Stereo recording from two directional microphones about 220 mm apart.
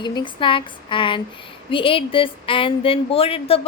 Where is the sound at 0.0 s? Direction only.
20° left (ahead or behind).